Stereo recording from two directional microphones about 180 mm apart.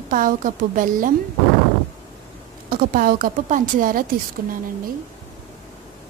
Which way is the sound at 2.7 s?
50° right (ahead or behind).